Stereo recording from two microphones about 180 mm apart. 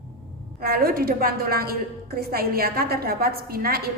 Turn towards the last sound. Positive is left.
turn(degrees=-55)  # may be behind; listen again after turning